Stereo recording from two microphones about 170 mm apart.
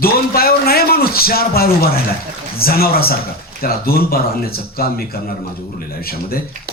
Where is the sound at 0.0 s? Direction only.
60° left (ahead or behind).